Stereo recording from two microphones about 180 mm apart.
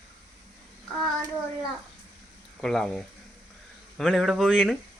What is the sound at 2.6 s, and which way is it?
Speech, centre (ahead or behind).